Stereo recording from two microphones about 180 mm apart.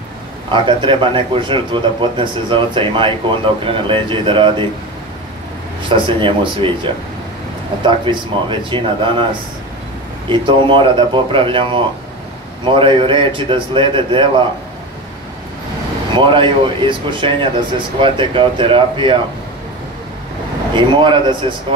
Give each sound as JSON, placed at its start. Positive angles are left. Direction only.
{"t": 0.5, "sound": "a man's voice", "side_deg": -25}
{"t": 5.9, "sound": "a man's voice", "side_deg": -30}
{"t": 10.2, "sound": "a man's voice", "side_deg": -25}
{"t": 16.2, "sound": "a man's voice", "side_deg": -30}
{"t": 20.7, "sound": "a man's voice", "side_deg": -25}